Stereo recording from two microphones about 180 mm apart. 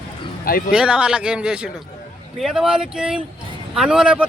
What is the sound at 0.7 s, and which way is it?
A man's voice, 5° right (ahead or behind).